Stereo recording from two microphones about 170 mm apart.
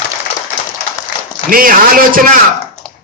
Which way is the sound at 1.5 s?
55° right (ahead or behind).